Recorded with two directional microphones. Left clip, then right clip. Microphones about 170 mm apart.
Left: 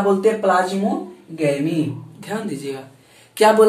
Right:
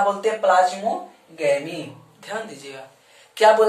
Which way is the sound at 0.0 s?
10° left (ahead or behind).